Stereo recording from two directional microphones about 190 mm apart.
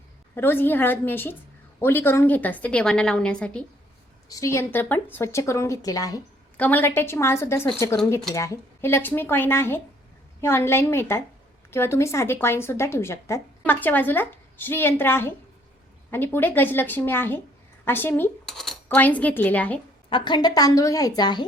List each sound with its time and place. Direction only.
0.3 s speech: 10° left (ahead or behind)
4.3 s speech: 15° left (ahead or behind)
20.1 s a woman's voice: 25° left (ahead or behind)